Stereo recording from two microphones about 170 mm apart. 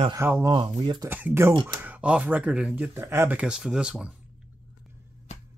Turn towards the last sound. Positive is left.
turn(degrees=-5)  # may be behind; listen again after turning